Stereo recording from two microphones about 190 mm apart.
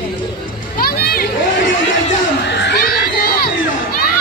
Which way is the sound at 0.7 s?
55° left (ahead or behind).